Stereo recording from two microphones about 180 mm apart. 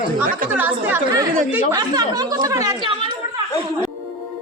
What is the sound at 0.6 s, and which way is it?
Speech, 10° right (ahead or behind).